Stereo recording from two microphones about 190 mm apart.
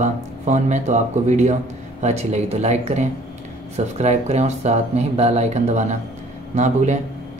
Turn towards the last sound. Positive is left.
turn(degrees=-40)  # may be behind; listen again after turning